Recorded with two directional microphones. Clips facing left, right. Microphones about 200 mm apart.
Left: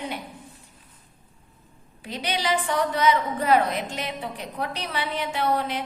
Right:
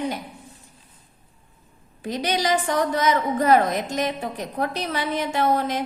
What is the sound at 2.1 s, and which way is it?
A woman's voice, 45° right (ahead or behind).